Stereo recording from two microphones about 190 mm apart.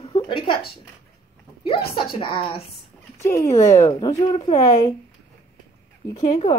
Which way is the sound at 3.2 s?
15° left (ahead or behind).